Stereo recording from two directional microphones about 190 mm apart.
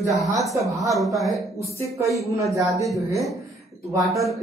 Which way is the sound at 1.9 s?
15° right (ahead or behind).